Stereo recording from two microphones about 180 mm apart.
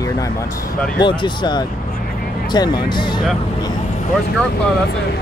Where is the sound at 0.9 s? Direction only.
25° left (ahead or behind).